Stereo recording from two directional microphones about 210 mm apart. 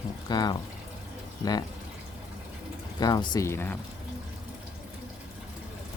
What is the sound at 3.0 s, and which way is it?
Speech, 20° left (ahead or behind).